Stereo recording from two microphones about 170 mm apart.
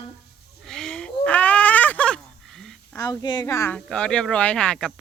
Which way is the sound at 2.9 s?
25° left (ahead or behind).